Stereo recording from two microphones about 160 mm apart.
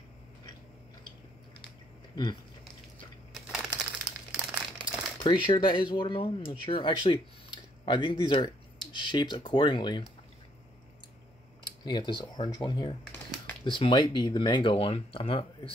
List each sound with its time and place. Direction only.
3.3 s a sound: 5° right (ahead or behind)
4.3 s crumpling: 5° right (ahead or behind)
5.2 s speech: 30° left (ahead or behind)
11.8 s speech: 30° left (ahead or behind)